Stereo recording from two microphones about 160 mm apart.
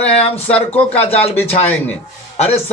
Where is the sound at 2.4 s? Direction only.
40° left (ahead or behind).